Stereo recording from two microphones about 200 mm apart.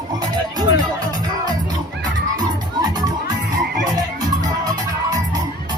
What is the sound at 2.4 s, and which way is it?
Music, 20° right (ahead or behind).